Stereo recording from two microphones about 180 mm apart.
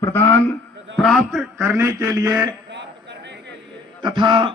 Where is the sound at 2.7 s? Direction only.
75° right (ahead or behind).